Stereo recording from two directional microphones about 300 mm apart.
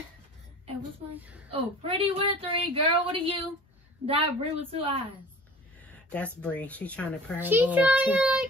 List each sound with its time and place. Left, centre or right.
1.1 s a child's voice: centre
1.5 s a woman's voice: centre
5.8 s speech: centre
7.3 s a child's voice: centre